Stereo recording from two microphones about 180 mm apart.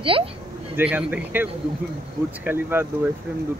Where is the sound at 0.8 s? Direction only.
10° right (ahead or behind).